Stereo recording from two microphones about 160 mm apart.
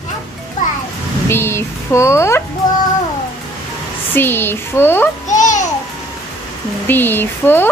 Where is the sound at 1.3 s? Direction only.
15° left (ahead or behind).